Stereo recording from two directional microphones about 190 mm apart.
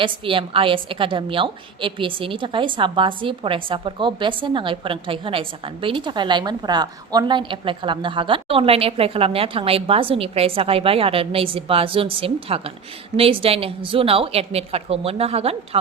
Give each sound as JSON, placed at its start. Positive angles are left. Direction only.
{"t": 0.0, "sound": "a woman's voice", "side_deg": -25}